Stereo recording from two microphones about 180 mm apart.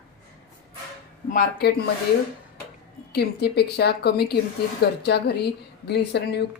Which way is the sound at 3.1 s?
65° left (ahead or behind).